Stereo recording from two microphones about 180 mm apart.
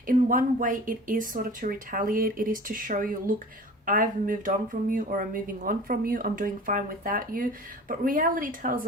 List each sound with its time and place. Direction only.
0.1 s speech: 50° right (ahead or behind)